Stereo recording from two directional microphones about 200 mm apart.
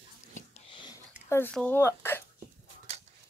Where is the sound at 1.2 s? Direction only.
10° left (ahead or behind).